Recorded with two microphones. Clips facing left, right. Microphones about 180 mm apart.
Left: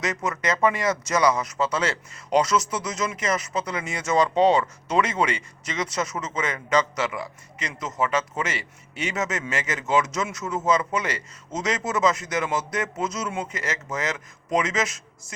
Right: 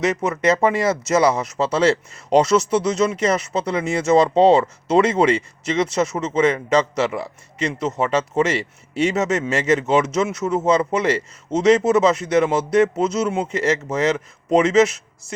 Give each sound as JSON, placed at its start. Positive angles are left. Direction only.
{"t": 0.0, "sound": "speech", "side_deg": -25}